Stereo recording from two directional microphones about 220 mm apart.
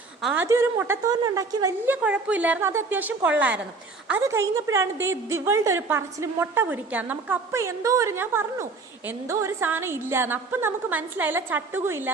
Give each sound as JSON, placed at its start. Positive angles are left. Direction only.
{"t": 0.2, "sound": "a woman's voice", "side_deg": 0}